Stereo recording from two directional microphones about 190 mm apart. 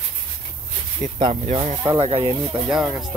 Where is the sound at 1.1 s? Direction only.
30° right (ahead or behind).